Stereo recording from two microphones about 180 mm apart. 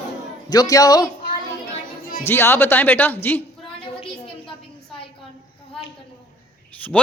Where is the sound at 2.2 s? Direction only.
15° left (ahead or behind).